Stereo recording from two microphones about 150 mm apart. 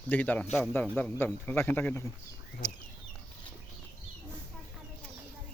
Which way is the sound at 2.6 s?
25° left (ahead or behind).